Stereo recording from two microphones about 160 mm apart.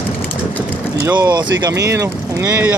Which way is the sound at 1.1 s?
25° right (ahead or behind).